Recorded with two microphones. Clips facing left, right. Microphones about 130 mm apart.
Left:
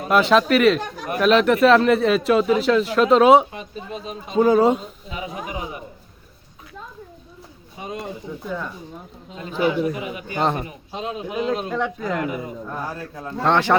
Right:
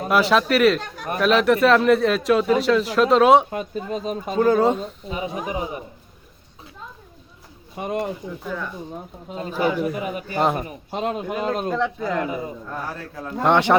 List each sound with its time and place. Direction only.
0.1 s speech: centre (ahead or behind)
3.5 s speech: 45° right (ahead or behind)
4.4 s speech: 5° left (ahead or behind)
5.0 s a man's voice: 35° right (ahead or behind)
7.8 s speech: 60° right (ahead or behind)
9.3 s a man's voice: 40° right (ahead or behind)
10.9 s speech: 55° right (ahead or behind)
11.9 s speech: 30° right (ahead or behind)
13.4 s speech: 15° right (ahead or behind)